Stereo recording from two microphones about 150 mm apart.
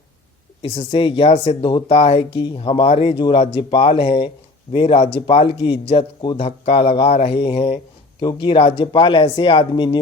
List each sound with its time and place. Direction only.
0.6 s speech: 40° left (ahead or behind)
2.3 s speech: 30° left (ahead or behind)